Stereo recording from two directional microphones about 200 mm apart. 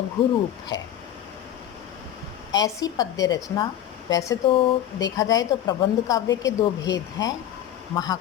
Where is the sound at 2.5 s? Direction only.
20° left (ahead or behind).